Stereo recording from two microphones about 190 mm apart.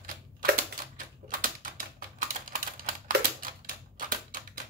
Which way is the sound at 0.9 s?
45° right (ahead or behind).